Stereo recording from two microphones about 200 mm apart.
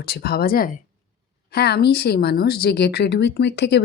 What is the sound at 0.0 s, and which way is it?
Speech, 50° left (ahead or behind).